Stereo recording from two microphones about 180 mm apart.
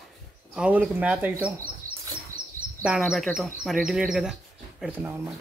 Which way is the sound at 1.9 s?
15° right (ahead or behind).